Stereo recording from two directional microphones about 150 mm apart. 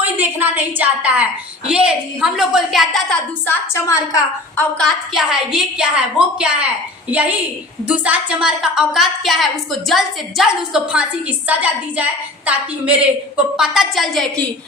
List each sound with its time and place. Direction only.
0.2 s a woman's voice: 15° right (ahead or behind)
3.4 s a woman's voice: 20° left (ahead or behind)
4.5 s a woman's voice: 5° left (ahead or behind)